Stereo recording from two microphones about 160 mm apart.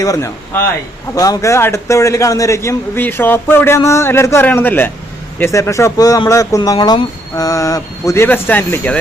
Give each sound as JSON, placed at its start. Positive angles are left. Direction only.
{"t": 0.0, "sound": "a man's voice", "side_deg": 20}